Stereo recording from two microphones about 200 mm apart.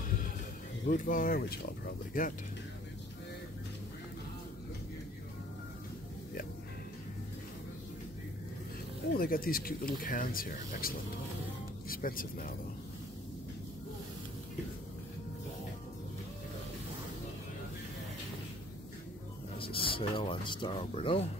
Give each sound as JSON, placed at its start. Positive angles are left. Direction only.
{"t": 0.8, "sound": "speech", "side_deg": 40}
{"t": 9.1, "sound": "speech", "side_deg": 45}
{"t": 19.6, "sound": "speech", "side_deg": 25}